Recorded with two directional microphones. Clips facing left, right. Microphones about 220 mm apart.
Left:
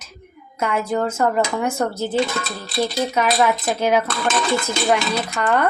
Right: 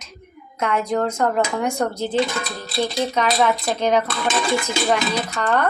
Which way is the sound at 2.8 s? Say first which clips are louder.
Left 1 dB; 5° left (ahead or behind).